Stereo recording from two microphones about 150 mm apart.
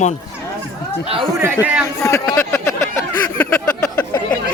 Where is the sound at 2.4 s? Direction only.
20° left (ahead or behind).